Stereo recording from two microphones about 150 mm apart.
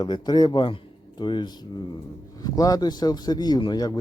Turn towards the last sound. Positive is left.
turn(degrees=30)  # may be behind; listen again after turning